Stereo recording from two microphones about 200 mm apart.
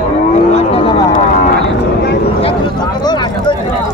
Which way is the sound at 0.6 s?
25° left (ahead or behind).